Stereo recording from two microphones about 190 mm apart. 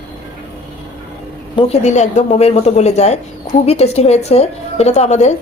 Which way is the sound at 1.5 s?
35° left (ahead or behind).